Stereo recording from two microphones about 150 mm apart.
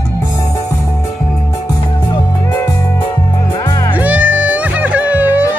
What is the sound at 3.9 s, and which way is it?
Music, 10° right (ahead or behind).